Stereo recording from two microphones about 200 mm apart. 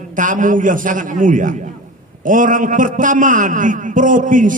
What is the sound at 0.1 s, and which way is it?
A man's voice, 40° right (ahead or behind).